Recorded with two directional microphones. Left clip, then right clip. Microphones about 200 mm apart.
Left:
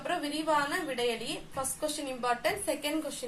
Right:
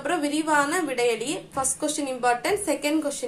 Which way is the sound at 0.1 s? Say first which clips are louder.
Right 6 dB; 20° right (ahead or behind).